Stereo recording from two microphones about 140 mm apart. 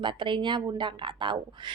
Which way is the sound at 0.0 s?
35° right (ahead or behind).